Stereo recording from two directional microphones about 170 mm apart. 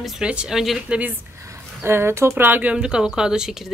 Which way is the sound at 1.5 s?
15° right (ahead or behind).